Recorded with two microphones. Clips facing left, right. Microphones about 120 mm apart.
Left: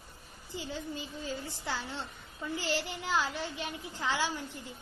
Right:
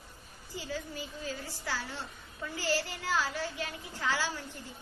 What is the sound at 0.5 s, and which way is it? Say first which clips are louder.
A woman's voice: even; 25° left (ahead or behind).